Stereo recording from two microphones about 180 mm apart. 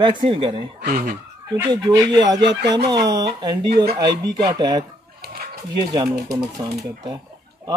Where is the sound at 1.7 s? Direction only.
25° right (ahead or behind).